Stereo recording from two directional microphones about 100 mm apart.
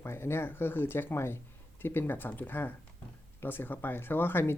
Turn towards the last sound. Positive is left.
turn(degrees=20)  # may be behind; listen again after turning